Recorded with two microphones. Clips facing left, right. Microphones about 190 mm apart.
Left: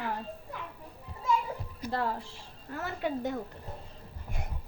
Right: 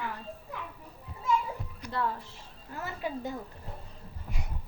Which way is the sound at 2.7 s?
60° left (ahead or behind).